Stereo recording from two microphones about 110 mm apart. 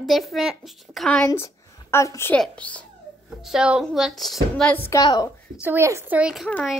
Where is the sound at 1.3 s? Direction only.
25° left (ahead or behind).